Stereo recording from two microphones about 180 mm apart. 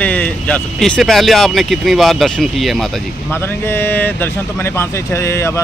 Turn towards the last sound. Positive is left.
turn(degrees=15)  # may be behind; listen again after turning